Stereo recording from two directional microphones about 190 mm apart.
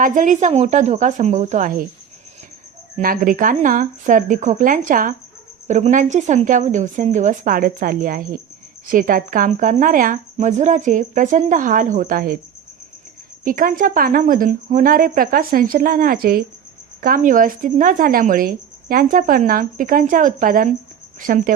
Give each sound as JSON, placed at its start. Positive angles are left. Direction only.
{"t": 0.0, "sound": "a woman's voice", "side_deg": -45}
{"t": 3.0, "sound": "a woman's voice", "side_deg": -50}
{"t": 13.4, "sound": "speech", "side_deg": -45}